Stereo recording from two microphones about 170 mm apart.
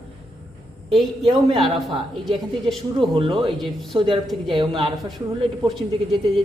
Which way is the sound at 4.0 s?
30° right (ahead or behind).